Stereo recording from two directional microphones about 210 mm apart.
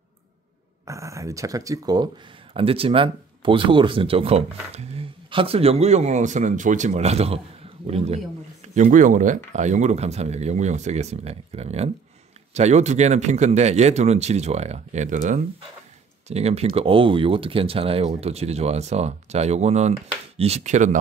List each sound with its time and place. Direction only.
0.8 s speech: 15° right (ahead or behind); by 21.0 s 35° right (ahead or behind)